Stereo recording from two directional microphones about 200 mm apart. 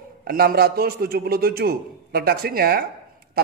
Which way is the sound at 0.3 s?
50° right (ahead or behind).